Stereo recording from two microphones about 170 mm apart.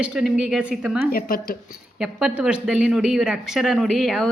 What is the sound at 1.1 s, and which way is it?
Speech, 60° left (ahead or behind).